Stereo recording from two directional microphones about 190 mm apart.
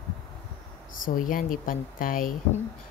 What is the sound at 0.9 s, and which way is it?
A woman's voice, 45° left (ahead or behind).